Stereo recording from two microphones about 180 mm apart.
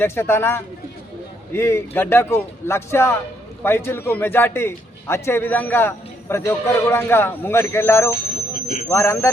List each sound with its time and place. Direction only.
0.0 s a man's voice: 15° left (ahead or behind)
8.5 s a sound: 50° left (ahead or behind)
8.9 s a man's voice: 15° left (ahead or behind)